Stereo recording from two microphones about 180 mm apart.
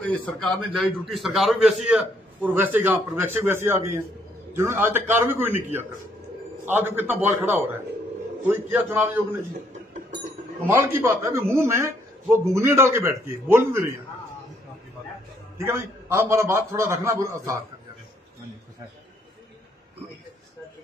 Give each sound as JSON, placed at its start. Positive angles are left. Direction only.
{"t": 0.0, "sound": "a man's voice", "side_deg": 10}
{"t": 6.6, "sound": "a man's voice", "side_deg": -10}
{"t": 10.7, "sound": "a man's voice", "side_deg": -10}
{"t": 15.5, "sound": "a man's voice", "side_deg": -15}